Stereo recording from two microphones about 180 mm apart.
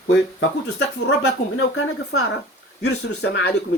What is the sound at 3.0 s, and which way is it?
Speech, 65° left (ahead or behind).